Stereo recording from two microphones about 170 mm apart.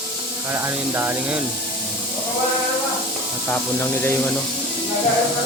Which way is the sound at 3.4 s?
15° left (ahead or behind).